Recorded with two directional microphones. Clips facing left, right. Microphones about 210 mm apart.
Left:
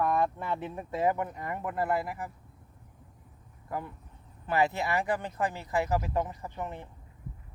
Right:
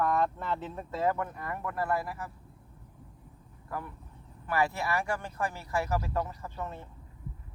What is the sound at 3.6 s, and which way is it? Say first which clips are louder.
Speech: left 2 dB; 20° left (ahead or behind).